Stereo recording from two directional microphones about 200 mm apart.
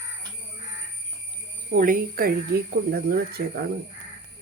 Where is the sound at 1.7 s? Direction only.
45° right (ahead or behind).